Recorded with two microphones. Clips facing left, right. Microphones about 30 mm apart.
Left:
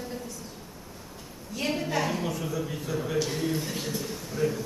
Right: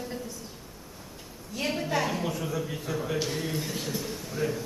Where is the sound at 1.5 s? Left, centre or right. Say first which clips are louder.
Even; centre.